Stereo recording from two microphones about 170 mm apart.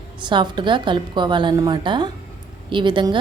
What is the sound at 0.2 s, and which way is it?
A woman's voice, 25° right (ahead or behind).